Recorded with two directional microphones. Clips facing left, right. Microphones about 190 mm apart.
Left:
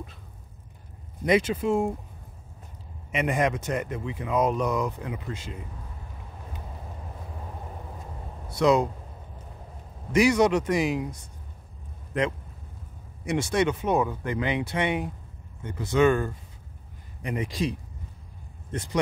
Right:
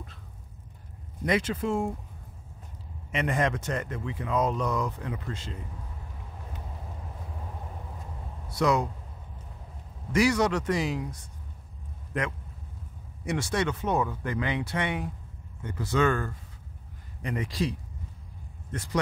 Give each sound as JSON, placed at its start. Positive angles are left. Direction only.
{"t": 1.2, "sound": "speech", "side_deg": 15}
{"t": 3.1, "sound": "speech", "side_deg": 15}
{"t": 8.6, "sound": "speech", "side_deg": 25}
{"t": 10.1, "sound": "speech", "side_deg": 20}
{"t": 13.2, "sound": "speech", "side_deg": 20}